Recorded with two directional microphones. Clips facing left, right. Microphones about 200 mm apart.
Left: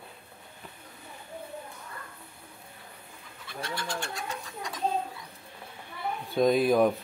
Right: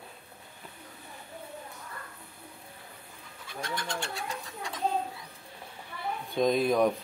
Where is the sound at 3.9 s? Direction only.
25° right (ahead or behind).